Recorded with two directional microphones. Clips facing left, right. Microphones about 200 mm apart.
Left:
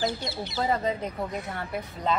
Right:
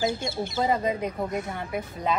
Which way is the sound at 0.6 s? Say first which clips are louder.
Right 1 dB; 15° right (ahead or behind).